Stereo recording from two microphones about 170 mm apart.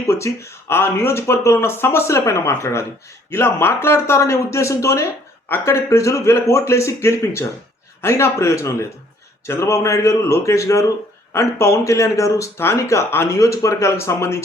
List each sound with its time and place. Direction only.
0.1 s speech: 15° left (ahead or behind)